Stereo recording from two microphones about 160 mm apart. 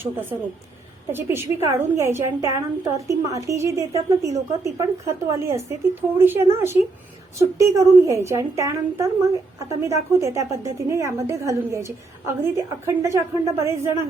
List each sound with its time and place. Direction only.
0.0 s a woman's voice: 10° right (ahead or behind)